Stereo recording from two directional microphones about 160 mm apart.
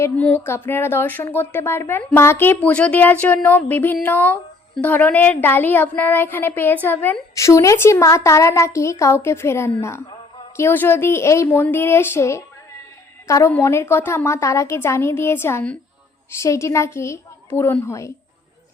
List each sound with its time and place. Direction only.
0.0 s a woman's voice: 10° left (ahead or behind)